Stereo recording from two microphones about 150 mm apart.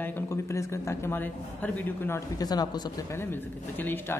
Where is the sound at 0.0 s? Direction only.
15° left (ahead or behind).